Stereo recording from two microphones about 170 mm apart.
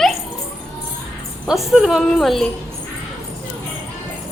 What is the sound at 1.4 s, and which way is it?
A woman's voice, 5° right (ahead or behind).